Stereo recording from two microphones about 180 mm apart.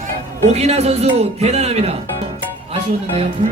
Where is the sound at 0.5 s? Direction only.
35° right (ahead or behind).